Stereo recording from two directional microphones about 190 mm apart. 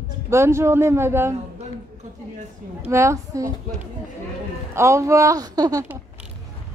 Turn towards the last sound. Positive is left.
turn(degrees=-15)  # may be behind; listen again after turning